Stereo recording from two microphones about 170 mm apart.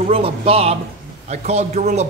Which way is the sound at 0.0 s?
35° right (ahead or behind).